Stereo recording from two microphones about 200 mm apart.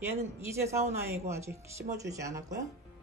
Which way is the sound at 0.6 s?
15° right (ahead or behind).